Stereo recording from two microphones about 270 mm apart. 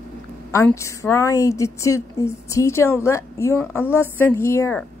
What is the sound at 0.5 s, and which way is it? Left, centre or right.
Speech, centre.